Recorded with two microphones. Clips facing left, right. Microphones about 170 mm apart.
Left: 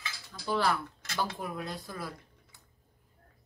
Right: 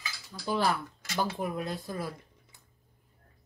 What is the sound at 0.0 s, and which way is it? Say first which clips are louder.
Cutlery: right 2 dB; 15° right (ahead or behind).